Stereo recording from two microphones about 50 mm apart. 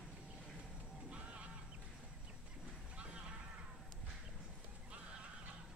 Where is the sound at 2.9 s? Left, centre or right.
Right.